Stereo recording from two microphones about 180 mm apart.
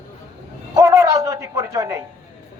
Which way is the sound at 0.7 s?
20° right (ahead or behind).